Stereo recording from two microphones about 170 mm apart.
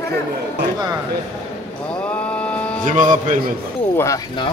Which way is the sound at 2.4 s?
5° left (ahead or behind).